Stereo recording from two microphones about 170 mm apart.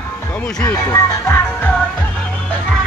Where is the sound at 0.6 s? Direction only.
20° left (ahead or behind).